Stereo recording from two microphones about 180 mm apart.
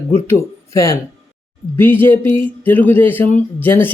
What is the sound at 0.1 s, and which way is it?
A man's voice, 15° left (ahead or behind).